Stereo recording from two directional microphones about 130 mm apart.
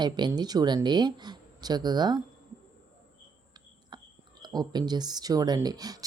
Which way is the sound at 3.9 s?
35° right (ahead or behind).